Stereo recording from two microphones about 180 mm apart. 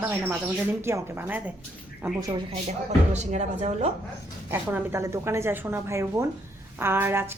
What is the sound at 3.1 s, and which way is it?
Speech, 40° right (ahead or behind).